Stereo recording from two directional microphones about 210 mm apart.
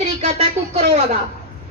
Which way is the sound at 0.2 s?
30° right (ahead or behind).